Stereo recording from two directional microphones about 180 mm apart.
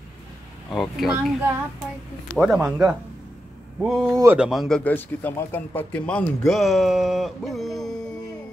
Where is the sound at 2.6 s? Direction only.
15° right (ahead or behind).